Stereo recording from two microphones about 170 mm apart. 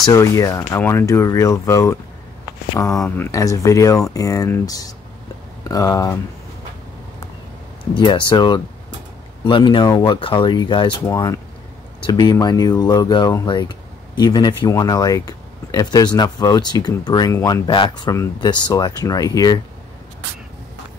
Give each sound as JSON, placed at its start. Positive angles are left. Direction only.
{"t": 0.0, "sound": "speech", "side_deg": 20}
{"t": 7.9, "sound": "speech", "side_deg": 25}